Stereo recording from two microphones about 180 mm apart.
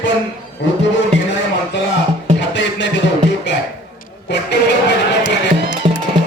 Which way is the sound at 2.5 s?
80° left.